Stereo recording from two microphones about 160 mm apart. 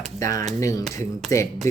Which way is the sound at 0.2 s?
20° left (ahead or behind).